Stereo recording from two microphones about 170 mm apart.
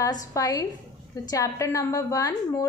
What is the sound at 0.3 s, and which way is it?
A woman's voice, 20° left (ahead or behind).